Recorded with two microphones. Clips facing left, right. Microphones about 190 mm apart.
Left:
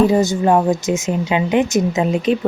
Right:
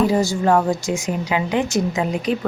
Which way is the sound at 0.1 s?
20° left (ahead or behind).